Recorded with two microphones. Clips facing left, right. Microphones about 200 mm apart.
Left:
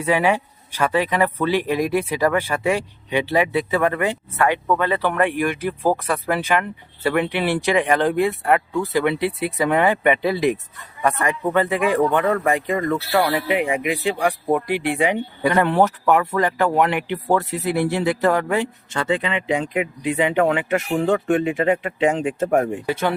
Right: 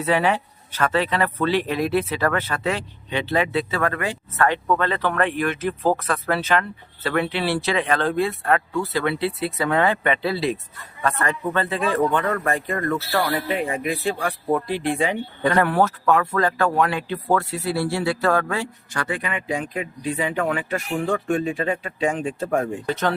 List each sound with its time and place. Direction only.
0.0 s speech: 10° left (ahead or behind)
22.9 s speech: 10° left (ahead or behind)